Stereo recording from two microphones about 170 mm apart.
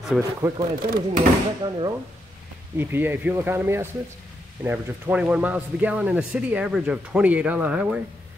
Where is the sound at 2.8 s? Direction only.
10° right (ahead or behind).